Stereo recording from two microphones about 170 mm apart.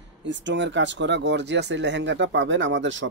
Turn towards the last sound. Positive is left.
turn(degrees=-90)